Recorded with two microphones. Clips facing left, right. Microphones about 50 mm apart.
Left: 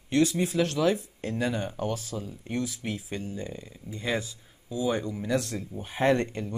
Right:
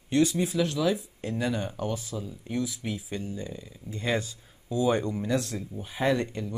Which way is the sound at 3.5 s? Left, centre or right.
Centre.